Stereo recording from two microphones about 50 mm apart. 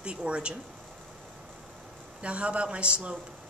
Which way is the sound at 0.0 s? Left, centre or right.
Right.